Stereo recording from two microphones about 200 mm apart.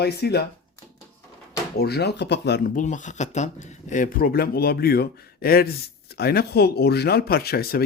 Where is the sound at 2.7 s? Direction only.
40° left (ahead or behind).